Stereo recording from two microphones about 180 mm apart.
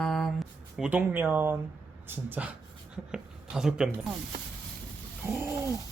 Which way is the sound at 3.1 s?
5° right (ahead or behind).